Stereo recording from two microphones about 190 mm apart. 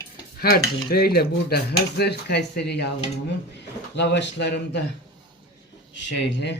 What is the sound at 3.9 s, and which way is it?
Dishes, 65° left (ahead or behind).